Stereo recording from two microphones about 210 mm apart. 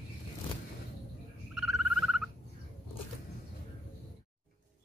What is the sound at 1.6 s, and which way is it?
Frog, centre (ahead or behind).